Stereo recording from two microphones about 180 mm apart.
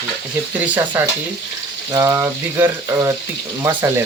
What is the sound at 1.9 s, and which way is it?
Frying, 15° right (ahead or behind).